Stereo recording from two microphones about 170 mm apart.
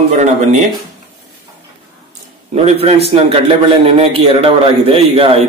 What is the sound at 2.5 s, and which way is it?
A man's voice, 40° right (ahead or behind).